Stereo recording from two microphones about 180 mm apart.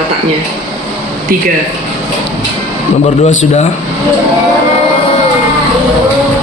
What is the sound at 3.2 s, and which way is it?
Speech, 40° left (ahead or behind).